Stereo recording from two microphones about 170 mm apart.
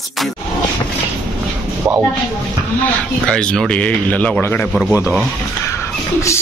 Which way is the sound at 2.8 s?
5° left (ahead or behind).